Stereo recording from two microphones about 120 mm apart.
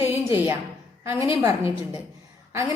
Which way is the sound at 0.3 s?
20° right (ahead or behind).